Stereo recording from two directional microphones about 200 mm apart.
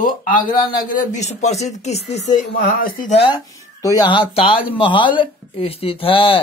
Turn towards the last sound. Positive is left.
turn(degrees=25)  # may be behind; listen again after turning